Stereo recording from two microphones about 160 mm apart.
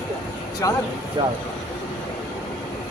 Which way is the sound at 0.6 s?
20° left (ahead or behind).